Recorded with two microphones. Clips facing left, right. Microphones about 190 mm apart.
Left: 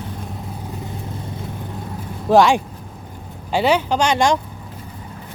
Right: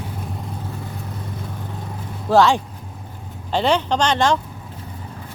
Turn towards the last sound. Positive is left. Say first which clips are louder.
# left 1 dB
turn(degrees=15)  # may be behind; listen again after turning